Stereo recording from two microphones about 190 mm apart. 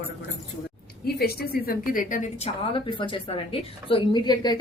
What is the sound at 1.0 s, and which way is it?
Speech, 55° left (ahead or behind).